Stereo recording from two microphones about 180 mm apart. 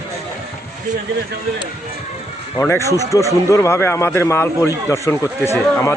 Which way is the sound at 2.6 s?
15° left (ahead or behind).